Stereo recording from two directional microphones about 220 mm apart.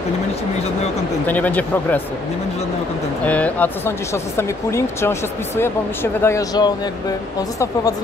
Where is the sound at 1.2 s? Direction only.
5° left (ahead or behind).